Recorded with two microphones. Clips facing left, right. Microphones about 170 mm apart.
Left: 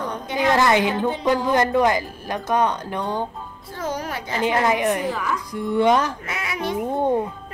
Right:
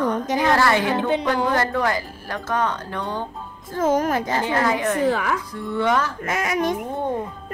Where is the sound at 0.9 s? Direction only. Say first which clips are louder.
Even; 75° right (ahead or behind).